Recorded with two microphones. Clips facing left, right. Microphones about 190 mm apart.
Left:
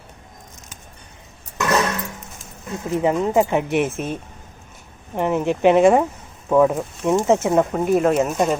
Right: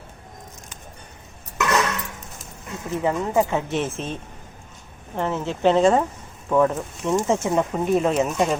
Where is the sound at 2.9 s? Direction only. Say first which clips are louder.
Left 3 dB; 20° left (ahead or behind).